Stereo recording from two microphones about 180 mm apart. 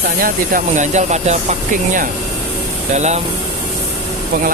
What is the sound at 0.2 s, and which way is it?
Speech, 45° right (ahead or behind).